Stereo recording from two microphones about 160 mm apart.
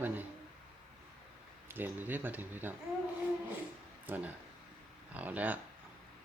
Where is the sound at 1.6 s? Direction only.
10° right (ahead or behind).